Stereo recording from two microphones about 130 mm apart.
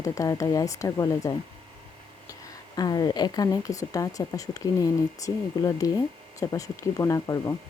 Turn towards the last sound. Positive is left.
turn(degrees=25)  # may be behind; listen again after turning